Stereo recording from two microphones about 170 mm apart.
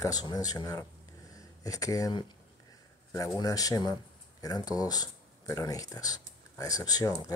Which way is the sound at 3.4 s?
20° left (ahead or behind).